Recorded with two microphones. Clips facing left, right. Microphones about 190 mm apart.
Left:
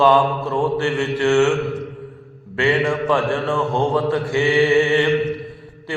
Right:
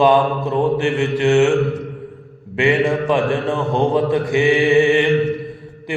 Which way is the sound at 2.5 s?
15° right (ahead or behind).